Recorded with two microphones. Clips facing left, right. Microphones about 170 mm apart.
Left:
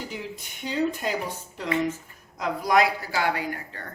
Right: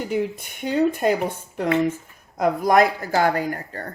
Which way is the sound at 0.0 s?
55° right (ahead or behind).